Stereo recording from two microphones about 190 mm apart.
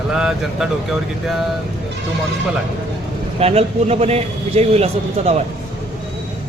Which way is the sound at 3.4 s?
35° right (ahead or behind).